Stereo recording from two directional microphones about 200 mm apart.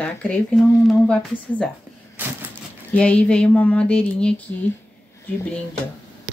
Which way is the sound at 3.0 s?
5° left (ahead or behind).